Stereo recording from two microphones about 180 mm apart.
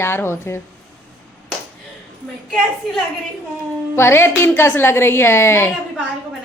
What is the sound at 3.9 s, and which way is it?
A woman's voice, 15° left (ahead or behind).